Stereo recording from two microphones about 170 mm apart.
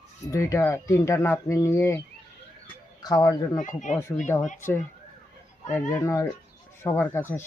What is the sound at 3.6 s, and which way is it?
Speech, 50° left (ahead or behind).